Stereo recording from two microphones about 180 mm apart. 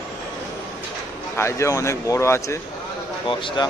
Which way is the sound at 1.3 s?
15° left (ahead or behind).